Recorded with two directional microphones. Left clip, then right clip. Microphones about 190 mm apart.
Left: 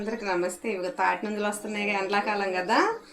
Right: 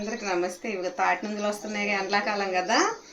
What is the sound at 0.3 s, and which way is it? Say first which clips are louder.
Speech: even; 15° right (ahead or behind).